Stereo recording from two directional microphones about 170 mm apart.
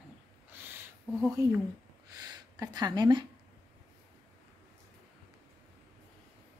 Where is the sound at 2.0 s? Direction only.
25° right (ahead or behind).